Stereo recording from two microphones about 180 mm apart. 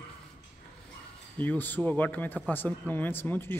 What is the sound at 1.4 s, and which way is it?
Speech, 10° left (ahead or behind).